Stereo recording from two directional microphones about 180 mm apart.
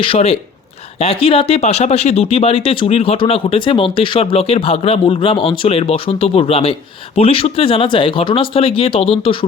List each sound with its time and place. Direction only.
0.0 s speech: 35° left (ahead or behind)